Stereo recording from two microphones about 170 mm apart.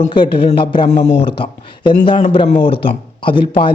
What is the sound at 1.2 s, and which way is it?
Speech, 30° left (ahead or behind).